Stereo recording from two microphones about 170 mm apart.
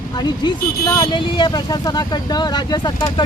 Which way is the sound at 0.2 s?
25° left (ahead or behind).